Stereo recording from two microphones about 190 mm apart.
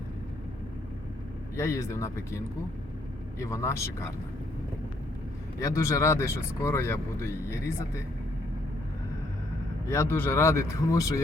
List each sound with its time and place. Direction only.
1.5 s speech: 15° left (ahead or behind)
5.5 s speech: 15° left (ahead or behind)
9.8 s speech: 15° left (ahead or behind)